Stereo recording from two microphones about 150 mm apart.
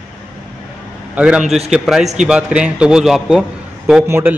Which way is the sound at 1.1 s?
5° right (ahead or behind).